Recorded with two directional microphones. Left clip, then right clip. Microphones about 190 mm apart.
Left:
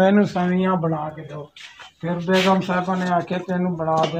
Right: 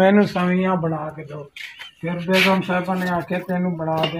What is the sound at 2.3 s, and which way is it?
Speech, centre (ahead or behind).